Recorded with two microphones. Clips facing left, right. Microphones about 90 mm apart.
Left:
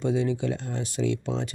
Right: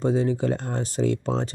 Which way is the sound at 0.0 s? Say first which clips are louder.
Right 3 dB; 40° right (ahead or behind).